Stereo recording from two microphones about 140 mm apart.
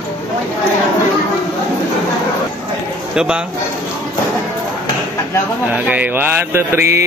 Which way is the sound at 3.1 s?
5° right (ahead or behind).